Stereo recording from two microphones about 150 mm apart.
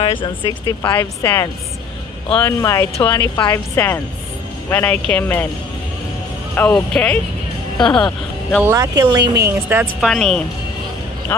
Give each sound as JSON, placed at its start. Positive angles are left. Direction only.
{"t": 0.0, "sound": "speech", "side_deg": 35}
{"t": 0.8, "sound": "speech", "side_deg": 15}
{"t": 6.5, "sound": "speech", "side_deg": 10}
{"t": 8.6, "sound": "speech", "side_deg": -20}
{"t": 9.5, "sound": "a woman's voice", "side_deg": -15}
{"t": 9.9, "sound": "speech", "side_deg": 0}